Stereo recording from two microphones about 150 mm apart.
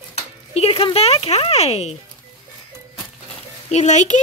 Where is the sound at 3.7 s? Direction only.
50° left (ahead or behind).